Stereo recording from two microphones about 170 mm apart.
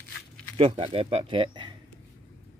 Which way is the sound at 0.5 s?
35° right (ahead or behind).